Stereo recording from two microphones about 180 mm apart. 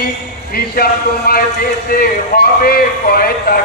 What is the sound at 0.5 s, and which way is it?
A man's voice, 55° left (ahead or behind).